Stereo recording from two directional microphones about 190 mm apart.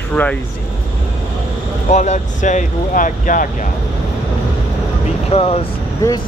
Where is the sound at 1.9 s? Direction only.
40° left (ahead or behind).